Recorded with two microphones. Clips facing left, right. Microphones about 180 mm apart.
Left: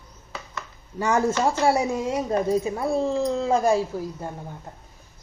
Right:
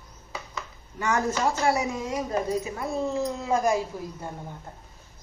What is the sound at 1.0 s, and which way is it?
Speech, 30° left (ahead or behind).